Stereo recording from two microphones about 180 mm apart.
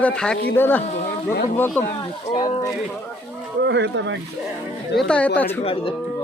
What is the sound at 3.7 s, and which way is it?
Speech, 80° right.